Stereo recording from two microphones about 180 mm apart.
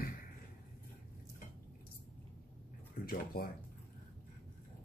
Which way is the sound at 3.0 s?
55° left (ahead or behind).